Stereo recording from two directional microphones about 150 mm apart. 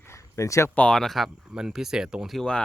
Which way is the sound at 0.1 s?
20° left (ahead or behind).